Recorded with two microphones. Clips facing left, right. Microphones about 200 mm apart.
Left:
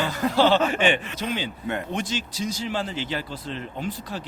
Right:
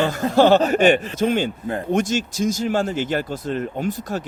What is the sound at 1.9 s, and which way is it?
Speech, 45° right (ahead or behind).